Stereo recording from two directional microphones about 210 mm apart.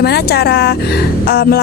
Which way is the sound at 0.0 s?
50° left (ahead or behind).